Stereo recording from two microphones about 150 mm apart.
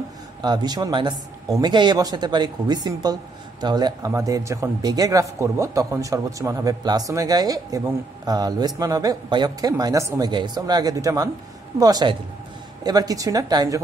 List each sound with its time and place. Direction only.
0.4 s a man's voice: 30° right (ahead or behind)